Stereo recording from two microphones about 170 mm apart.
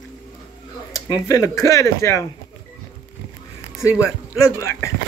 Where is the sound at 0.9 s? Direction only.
20° left (ahead or behind).